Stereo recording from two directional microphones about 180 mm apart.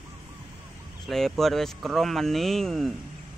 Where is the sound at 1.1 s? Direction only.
Centre (ahead or behind).